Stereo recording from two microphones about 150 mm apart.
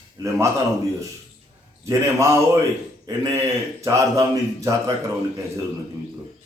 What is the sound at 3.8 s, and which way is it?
Speech, 20° right (ahead or behind).